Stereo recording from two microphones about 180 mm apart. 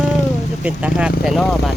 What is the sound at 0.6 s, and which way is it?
Speech, 5° right (ahead or behind).